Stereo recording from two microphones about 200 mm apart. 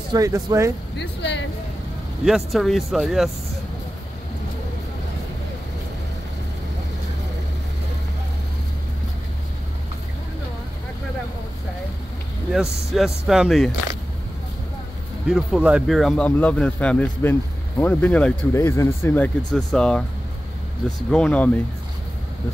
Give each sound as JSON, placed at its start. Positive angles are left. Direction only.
{"t": 0.1, "sound": "speech", "side_deg": -15}
{"t": 0.9, "sound": "speech", "side_deg": 60}
{"t": 2.2, "sound": "speech", "side_deg": 0}
{"t": 12.5, "sound": "speech", "side_deg": 0}
{"t": 15.2, "sound": "speech", "side_deg": 0}
{"t": 21.1, "sound": "speech", "side_deg": 5}